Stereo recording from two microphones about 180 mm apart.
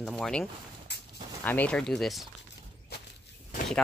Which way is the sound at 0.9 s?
70° left (ahead or behind).